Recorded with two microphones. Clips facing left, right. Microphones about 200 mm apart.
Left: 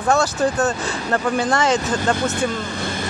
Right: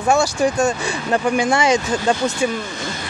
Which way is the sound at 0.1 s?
10° right (ahead or behind).